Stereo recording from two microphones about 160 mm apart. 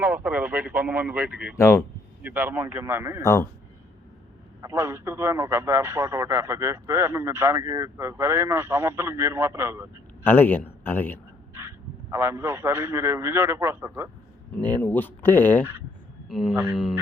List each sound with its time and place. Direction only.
0.0 s a man's voice: 10° right (ahead or behind)
1.5 s speech: 20° left (ahead or behind)
2.2 s a man's voice: 10° right (ahead or behind)
4.6 s a man's voice: 15° right (ahead or behind)
10.2 s speech: 10° left (ahead or behind)
12.1 s a man's voice: 15° right (ahead or behind)
14.5 s speech: 10° left (ahead or behind)
16.3 s speech: centre (ahead or behind)